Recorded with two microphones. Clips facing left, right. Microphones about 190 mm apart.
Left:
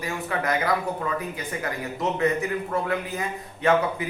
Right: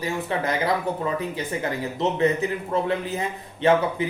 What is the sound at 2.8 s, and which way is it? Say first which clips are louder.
Speech: right 2 dB; 25° right (ahead or behind).